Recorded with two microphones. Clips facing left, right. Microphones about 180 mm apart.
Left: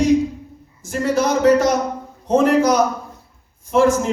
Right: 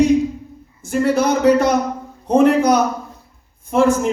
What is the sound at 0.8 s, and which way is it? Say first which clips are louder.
A man's voice: right 2 dB; 60° right (ahead or behind).